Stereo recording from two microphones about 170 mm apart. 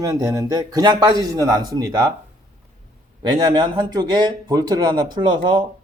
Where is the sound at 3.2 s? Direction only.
25° right (ahead or behind).